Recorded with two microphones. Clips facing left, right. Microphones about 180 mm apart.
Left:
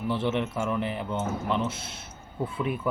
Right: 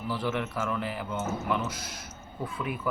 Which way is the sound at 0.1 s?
25° left (ahead or behind).